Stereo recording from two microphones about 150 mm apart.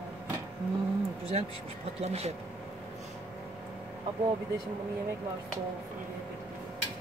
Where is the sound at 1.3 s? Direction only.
45° right (ahead or behind).